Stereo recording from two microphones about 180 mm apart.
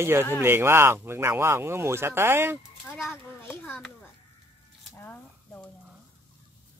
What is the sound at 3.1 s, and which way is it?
Speech, 10° left (ahead or behind).